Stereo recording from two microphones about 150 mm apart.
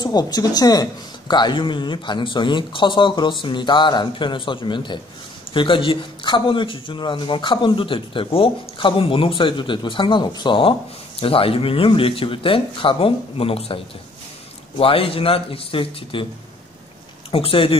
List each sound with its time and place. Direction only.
0.0 s a man's voice: 25° left (ahead or behind)
14.8 s a man's voice: 40° left (ahead or behind)
17.3 s a man's voice: 40° left (ahead or behind)